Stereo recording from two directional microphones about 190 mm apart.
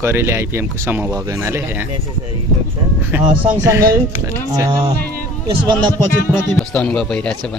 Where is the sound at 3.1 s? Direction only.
10° right (ahead or behind).